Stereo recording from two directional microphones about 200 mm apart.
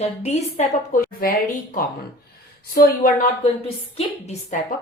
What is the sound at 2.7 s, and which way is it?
Speech, 45° left (ahead or behind).